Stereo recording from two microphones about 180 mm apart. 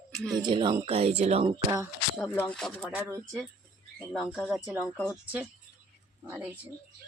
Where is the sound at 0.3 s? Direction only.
25° right (ahead or behind).